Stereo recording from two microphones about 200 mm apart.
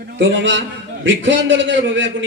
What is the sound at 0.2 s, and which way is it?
Music, 65° right (ahead or behind).